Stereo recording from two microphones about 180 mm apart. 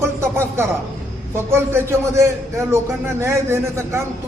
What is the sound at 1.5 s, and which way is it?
A man's voice, 15° right (ahead or behind).